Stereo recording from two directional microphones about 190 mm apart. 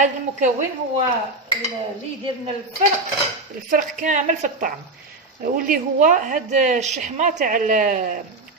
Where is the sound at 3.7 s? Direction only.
40° right (ahead or behind).